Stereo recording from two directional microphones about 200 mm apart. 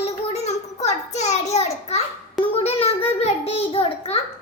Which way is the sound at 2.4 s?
30° left (ahead or behind).